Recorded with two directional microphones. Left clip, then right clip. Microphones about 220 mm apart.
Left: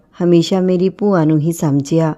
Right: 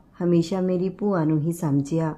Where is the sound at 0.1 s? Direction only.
35° left (ahead or behind).